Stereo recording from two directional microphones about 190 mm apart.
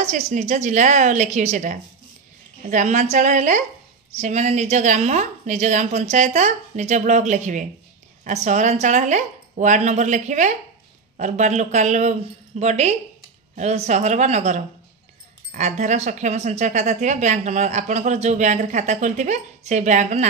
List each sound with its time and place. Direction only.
0.0 s speech: 40° right (ahead or behind)